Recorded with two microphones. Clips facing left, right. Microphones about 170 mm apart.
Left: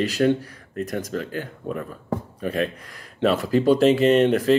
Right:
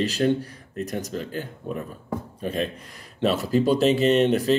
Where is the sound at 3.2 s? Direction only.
55° left (ahead or behind).